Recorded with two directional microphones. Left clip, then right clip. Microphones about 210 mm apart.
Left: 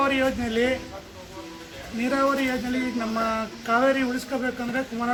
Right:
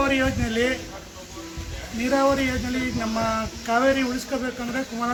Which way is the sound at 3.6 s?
5° left (ahead or behind).